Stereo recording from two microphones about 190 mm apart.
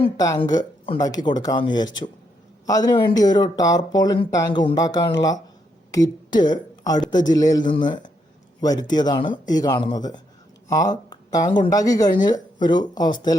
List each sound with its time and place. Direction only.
0.0 s speech: 20° left (ahead or behind)
6.4 s speech: 20° left (ahead or behind)